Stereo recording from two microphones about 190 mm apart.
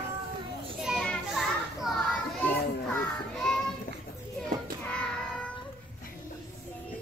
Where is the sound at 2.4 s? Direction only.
5° left (ahead or behind).